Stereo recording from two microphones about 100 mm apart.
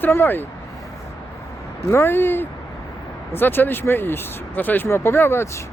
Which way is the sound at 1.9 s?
20° left (ahead or behind).